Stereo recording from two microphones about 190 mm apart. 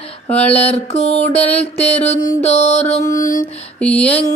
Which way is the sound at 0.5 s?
35° left (ahead or behind).